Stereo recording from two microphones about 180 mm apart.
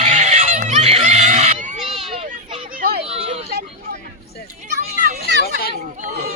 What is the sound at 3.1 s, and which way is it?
Vehicle, 35° right (ahead or behind).